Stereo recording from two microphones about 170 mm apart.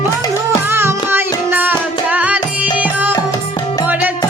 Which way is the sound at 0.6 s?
15° right (ahead or behind).